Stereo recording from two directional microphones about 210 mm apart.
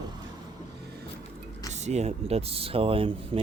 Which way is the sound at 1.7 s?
30° right (ahead or behind).